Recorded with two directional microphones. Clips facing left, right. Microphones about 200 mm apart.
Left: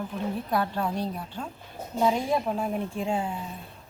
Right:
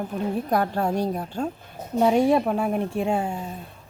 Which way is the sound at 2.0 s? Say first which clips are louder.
Right 6 dB; 65° right (ahead or behind).